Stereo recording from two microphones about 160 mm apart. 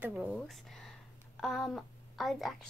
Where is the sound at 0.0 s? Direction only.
10° right (ahead or behind).